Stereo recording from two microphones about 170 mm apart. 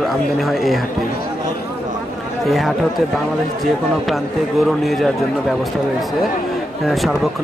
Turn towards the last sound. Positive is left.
turn(degrees=0)  # may be behind; listen again after turning